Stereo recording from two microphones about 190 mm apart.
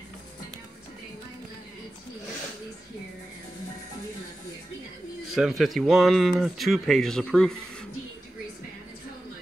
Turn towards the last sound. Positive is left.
turn(degrees=5)  # may be behind; listen again after turning